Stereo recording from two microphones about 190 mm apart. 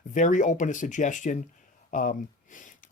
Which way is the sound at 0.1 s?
40° left (ahead or behind).